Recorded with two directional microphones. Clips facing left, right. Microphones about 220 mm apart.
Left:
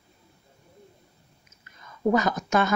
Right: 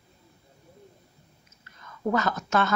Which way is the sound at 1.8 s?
15° left (ahead or behind).